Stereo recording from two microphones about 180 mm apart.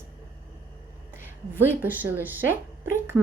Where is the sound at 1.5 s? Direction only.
10° right (ahead or behind).